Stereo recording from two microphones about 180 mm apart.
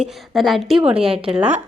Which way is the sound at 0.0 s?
Centre (ahead or behind).